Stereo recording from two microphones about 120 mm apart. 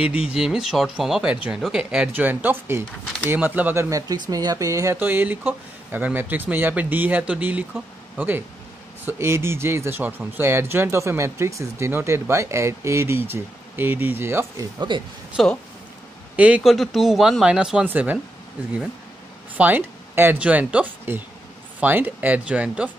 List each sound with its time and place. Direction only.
0.3 s speech: 5° right (ahead or behind)
3.9 s speech: 30° right (ahead or behind)
14.9 s speech: 40° right (ahead or behind)
15.4 s speech: centre (ahead or behind)
16.3 s speech: 10° right (ahead or behind)
16.7 s speech: centre (ahead or behind)
19.5 s speech: 15° right (ahead or behind)